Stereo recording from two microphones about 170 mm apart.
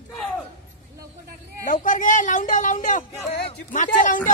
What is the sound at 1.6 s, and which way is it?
Speech, 50° left (ahead or behind).